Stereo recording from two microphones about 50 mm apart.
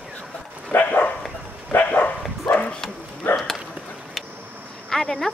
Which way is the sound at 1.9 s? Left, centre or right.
Left.